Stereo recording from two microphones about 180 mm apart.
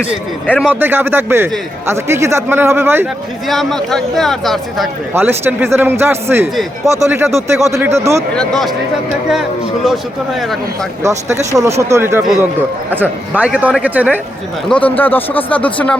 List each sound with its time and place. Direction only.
0.4 s speech: 10° left (ahead or behind)
0.7 s a man's voice: 10° right (ahead or behind)
3.4 s speech: centre (ahead or behind)
5.1 s a man's voice: 10° right (ahead or behind)
8.4 s speech: centre (ahead or behind)
11.0 s a man's voice: 15° right (ahead or behind)
14.7 s speech: 10° left (ahead or behind)